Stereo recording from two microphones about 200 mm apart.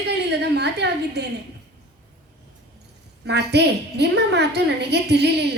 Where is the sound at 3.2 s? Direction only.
55° right (ahead or behind).